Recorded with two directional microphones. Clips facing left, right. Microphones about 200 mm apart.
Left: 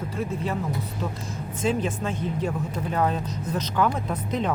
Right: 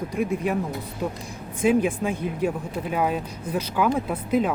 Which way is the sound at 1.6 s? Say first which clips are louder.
Right 5 dB; 10° right (ahead or behind).